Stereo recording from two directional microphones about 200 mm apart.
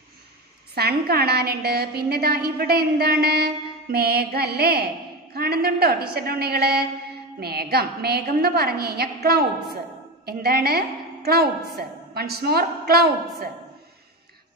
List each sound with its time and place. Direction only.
0.7 s a woman's voice: 50° right (ahead or behind)